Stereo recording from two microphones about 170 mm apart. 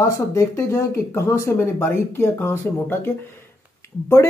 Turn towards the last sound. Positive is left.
turn(degrees=15)  # may be behind; listen again after turning